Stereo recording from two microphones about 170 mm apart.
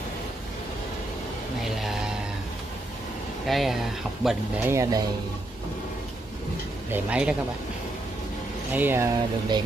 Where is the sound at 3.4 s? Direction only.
Centre (ahead or behind).